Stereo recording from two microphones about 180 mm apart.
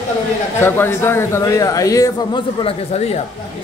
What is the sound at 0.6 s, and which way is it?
Speech, 15° left (ahead or behind).